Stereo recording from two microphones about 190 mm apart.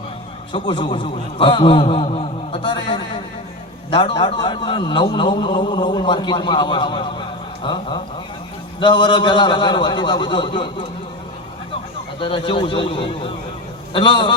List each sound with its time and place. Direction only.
0.5 s a man's voice: 25° left (ahead or behind)
12.2 s a man's voice: 25° left (ahead or behind)